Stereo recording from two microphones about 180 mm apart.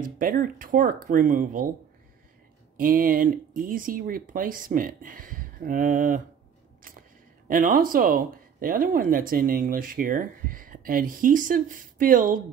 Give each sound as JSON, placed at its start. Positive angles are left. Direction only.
{"t": 0.0, "sound": "speech", "side_deg": -50}
{"t": 2.8, "sound": "speech", "side_deg": -50}
{"t": 7.4, "sound": "speech", "side_deg": -50}